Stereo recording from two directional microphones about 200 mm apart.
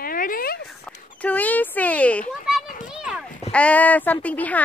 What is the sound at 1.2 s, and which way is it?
Speech, 10° left (ahead or behind).